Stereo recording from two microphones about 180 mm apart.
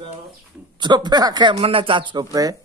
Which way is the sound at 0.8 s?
25° right (ahead or behind).